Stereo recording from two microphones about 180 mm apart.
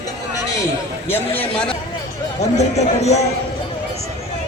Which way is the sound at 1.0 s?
10° left (ahead or behind).